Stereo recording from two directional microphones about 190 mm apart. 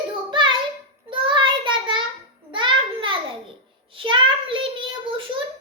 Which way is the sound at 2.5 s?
25° right (ahead or behind).